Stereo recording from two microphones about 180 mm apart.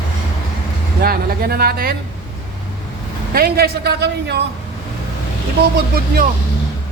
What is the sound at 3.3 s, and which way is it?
A man's voice, 60° right (ahead or behind).